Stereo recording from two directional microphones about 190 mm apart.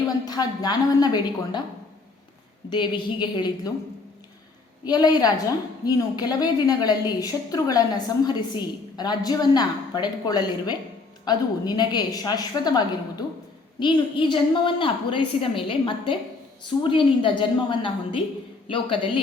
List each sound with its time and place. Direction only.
0.3 s a woman's voice: 20° left (ahead or behind)
2.6 s a woman's voice: 25° left (ahead or behind)
4.9 s a woman's voice: 20° left (ahead or behind)